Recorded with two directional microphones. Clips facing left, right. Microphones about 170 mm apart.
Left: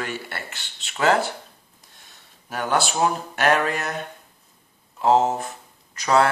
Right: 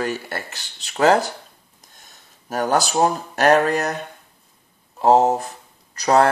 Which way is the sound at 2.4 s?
40° right (ahead or behind).